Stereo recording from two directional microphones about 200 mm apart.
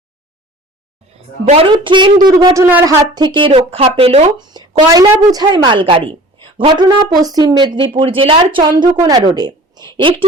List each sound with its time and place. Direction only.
1.5 s speech: 30° right (ahead or behind); by 2.9 s 10° right (ahead or behind)
3.2 s speech: 25° right (ahead or behind)